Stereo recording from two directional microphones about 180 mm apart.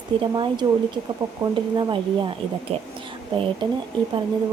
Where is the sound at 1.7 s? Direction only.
25° right (ahead or behind).